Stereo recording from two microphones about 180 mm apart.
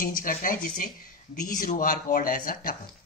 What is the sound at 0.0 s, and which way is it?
Speech, 50° left (ahead or behind).